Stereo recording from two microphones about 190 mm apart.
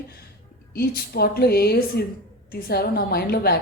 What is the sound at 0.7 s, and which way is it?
Speech, 55° left (ahead or behind).